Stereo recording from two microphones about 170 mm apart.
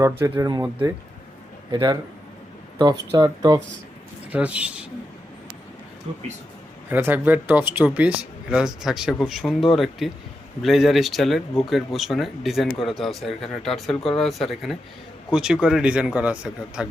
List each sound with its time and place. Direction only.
0.0 s speech: 20° right (ahead or behind)
1.7 s speech: 25° right (ahead or behind)
3.2 s speech: 20° right (ahead or behind)
4.3 s speech: 5° right (ahead or behind)
6.9 s speech: 10° right (ahead or behind)